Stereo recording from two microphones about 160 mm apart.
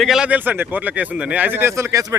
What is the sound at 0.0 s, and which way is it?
A man's voice, 5° right (ahead or behind).